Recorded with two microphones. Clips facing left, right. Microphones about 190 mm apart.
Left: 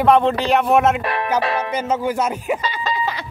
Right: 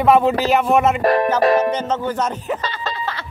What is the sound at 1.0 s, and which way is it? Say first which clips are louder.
Speech: right 8 dB; 40° right (ahead or behind).